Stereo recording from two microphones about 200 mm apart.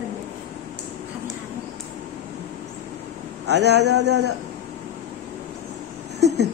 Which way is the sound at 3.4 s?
60° right (ahead or behind).